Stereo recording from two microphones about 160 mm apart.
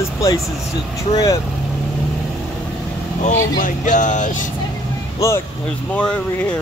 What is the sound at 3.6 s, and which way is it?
Speech, 50° left (ahead or behind).